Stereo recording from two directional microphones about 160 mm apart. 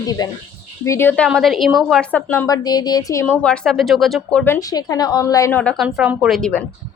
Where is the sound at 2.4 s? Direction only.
25° left (ahead or behind); by 4.4 s centre (ahead or behind).